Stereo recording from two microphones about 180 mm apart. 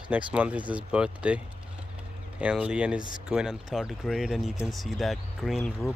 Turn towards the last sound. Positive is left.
turn(degrees=0)  # may be behind; listen again after turning